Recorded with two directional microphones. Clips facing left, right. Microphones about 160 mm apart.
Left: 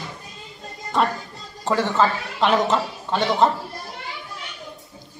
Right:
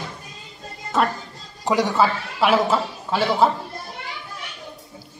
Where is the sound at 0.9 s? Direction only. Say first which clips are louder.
Even; centre (ahead or behind).